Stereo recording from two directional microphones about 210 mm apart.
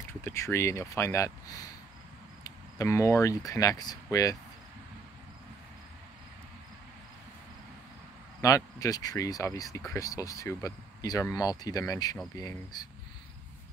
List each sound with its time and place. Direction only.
0.2 s speech: 10° left (ahead or behind)
8.4 s speech: 15° left (ahead or behind)